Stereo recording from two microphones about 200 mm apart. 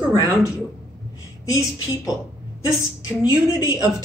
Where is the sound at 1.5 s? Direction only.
20° left (ahead or behind).